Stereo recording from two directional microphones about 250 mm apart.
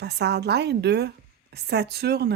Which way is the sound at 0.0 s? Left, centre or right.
Right.